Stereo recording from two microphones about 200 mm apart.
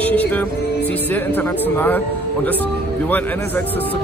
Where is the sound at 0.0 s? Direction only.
5° left (ahead or behind).